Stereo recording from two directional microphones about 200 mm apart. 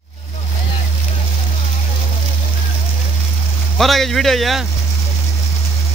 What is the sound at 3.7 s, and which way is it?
Speech, centre (ahead or behind).